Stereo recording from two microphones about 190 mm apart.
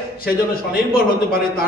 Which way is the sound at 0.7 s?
50° left (ahead or behind).